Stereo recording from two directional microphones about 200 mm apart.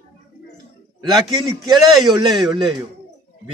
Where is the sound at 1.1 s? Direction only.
Centre (ahead or behind).